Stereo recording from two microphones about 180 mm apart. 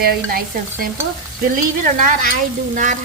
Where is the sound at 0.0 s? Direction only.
55° right (ahead or behind).